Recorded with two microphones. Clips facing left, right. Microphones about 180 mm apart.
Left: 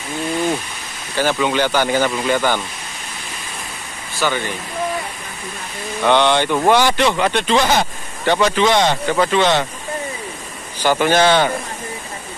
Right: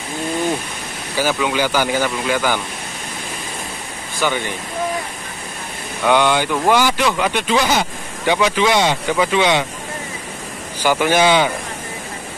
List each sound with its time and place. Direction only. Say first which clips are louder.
1.1 s speech: left 1 dB; 5° right (ahead or behind)
4.2 s speech: even; 15° right (ahead or behind)
6.0 s speech: left 1 dB; 5° right (ahead or behind)
10.8 s speech: left 1 dB; 10° right (ahead or behind)